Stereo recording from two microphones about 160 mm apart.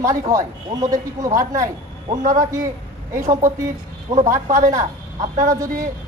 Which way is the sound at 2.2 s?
55° right (ahead or behind).